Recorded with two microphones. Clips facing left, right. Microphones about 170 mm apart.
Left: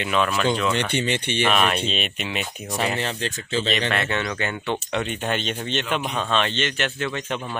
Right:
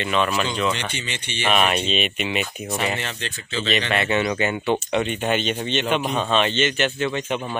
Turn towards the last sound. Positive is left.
turn(degrees=-5)  # may be behind; listen again after turning